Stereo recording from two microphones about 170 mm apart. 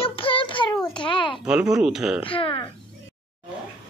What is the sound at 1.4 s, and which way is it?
Speech, 5° right (ahead or behind).